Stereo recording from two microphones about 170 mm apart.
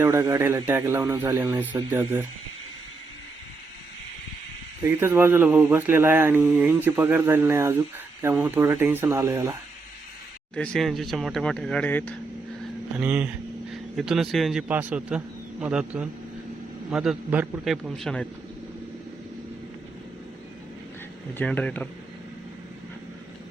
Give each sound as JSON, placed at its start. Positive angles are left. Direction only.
{"t": 0.0, "sound": "speech", "side_deg": -15}
{"t": 4.8, "sound": "speech", "side_deg": -15}
{"t": 10.5, "sound": "speech", "side_deg": 5}
{"t": 13.0, "sound": "speech", "side_deg": -10}
{"t": 21.3, "sound": "speech", "side_deg": 10}